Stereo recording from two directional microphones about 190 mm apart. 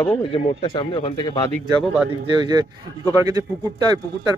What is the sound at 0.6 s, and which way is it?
Speech, 20° left (ahead or behind).